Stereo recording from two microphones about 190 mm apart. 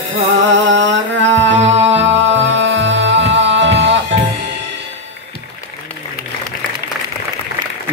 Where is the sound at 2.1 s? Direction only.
75° right (ahead or behind).